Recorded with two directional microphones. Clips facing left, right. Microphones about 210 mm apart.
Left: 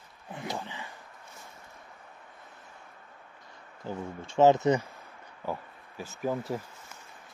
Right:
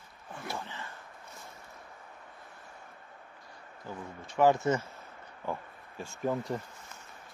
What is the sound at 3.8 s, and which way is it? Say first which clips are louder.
Speech: left 6 dB; 25° left (ahead or behind).